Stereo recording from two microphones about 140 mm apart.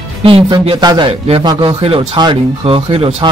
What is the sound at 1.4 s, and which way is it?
A man's voice, 30° right (ahead or behind).